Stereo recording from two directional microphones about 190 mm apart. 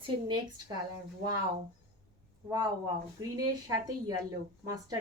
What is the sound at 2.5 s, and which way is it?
A woman's voice, 20° right (ahead or behind).